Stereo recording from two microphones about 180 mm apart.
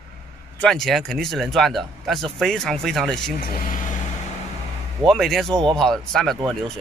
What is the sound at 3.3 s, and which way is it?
Speech, 50° left (ahead or behind).